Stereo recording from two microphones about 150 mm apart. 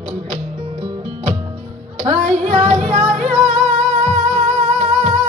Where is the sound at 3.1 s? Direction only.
50° right (ahead or behind).